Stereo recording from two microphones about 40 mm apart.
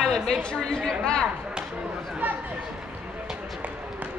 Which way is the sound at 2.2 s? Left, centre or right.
Right.